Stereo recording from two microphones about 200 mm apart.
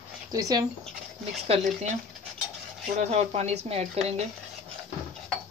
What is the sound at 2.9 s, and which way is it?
Speech, 35° right (ahead or behind).